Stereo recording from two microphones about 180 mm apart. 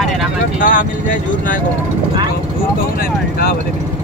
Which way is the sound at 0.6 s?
45° left (ahead or behind).